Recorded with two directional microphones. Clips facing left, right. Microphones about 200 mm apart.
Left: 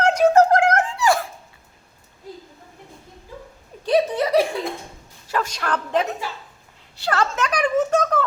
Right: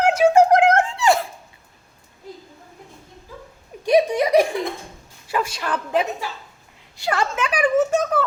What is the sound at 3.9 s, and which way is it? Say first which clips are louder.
Laughter: right 2 dB; 15° right (ahead or behind).